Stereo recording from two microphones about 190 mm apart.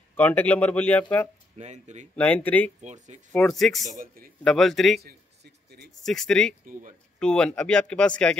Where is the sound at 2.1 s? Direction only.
5° left (ahead or behind).